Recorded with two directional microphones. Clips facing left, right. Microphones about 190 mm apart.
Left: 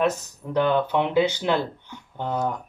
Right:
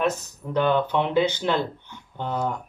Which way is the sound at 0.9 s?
15° left (ahead or behind).